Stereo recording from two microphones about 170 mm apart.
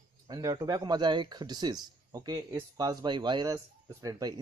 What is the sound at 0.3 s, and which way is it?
Speech, 20° right (ahead or behind).